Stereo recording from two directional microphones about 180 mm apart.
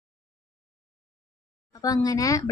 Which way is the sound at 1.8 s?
20° left (ahead or behind).